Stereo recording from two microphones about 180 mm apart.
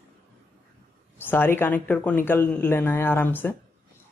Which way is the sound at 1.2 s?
10° left (ahead or behind).